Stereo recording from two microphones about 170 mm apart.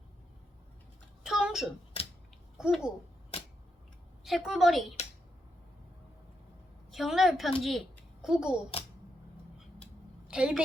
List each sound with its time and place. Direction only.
1.2 s a sound: 5° right (ahead or behind)
2.6 s a woman's voice: 5° right (ahead or behind)
3.3 s a sound: 35° left (ahead or behind)
4.2 s a woman's voice: centre (ahead or behind)
6.9 s a woman's voice: centre (ahead or behind)
10.2 s a woman's voice: 5° right (ahead or behind)